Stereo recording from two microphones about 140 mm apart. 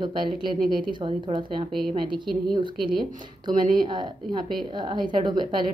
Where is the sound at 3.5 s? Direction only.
35° right (ahead or behind).